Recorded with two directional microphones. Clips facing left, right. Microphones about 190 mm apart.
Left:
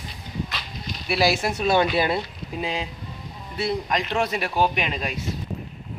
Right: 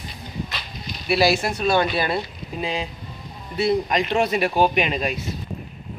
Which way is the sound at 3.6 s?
10° right (ahead or behind).